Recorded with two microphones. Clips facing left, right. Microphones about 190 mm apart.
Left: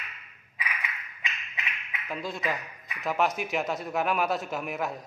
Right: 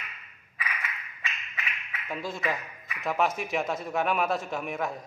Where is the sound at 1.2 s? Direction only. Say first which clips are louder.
Even; 15° left (ahead or behind).